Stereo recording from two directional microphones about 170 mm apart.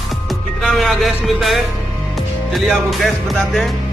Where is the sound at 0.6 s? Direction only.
Centre (ahead or behind).